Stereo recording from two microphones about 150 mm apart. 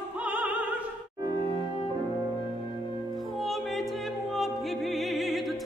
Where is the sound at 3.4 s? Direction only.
Centre (ahead or behind).